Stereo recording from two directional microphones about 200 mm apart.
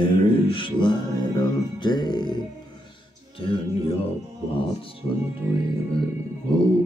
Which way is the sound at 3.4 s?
25° left (ahead or behind).